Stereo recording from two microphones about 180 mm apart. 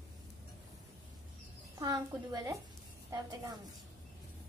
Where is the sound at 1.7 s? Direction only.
20° right (ahead or behind).